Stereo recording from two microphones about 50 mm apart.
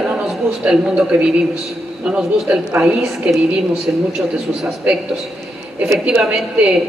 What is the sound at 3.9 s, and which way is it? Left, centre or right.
Speech, right.